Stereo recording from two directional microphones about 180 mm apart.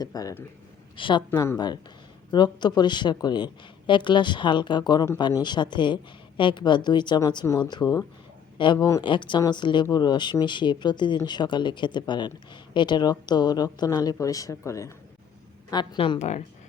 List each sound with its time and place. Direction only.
0.0 s speech: 20° left (ahead or behind)
1.3 s speech: 15° left (ahead or behind); by 16.4 s 40° left (ahead or behind)